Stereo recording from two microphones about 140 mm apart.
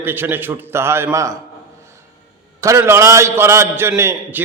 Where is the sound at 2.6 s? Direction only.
20° right (ahead or behind).